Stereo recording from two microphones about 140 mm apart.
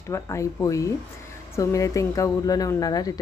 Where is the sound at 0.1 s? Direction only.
20° left (ahead or behind).